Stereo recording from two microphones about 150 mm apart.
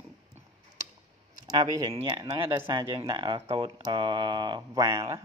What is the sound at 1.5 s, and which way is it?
Speech, 25° right (ahead or behind).